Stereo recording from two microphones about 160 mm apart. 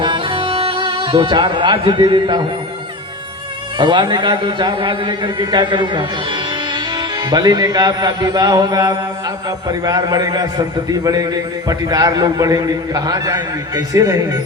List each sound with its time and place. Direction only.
0.0 s music: 30° right (ahead or behind)
3.8 s a man's voice: 30° right (ahead or behind)
7.3 s a man's voice: 25° right (ahead or behind)